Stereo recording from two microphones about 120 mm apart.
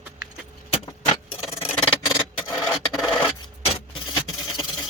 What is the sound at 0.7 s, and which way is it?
Keys jangling, 50° left (ahead or behind).